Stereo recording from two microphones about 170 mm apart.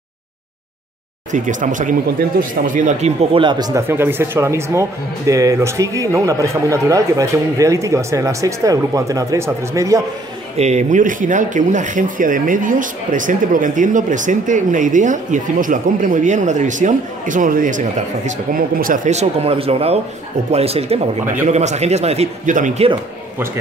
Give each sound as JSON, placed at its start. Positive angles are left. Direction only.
{"t": 1.3, "sound": "speech", "side_deg": -50}
{"t": 3.3, "sound": "speech", "side_deg": -25}
{"t": 10.6, "sound": "speech", "side_deg": -45}